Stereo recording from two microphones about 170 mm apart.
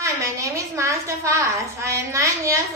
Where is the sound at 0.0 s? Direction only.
15° right (ahead or behind).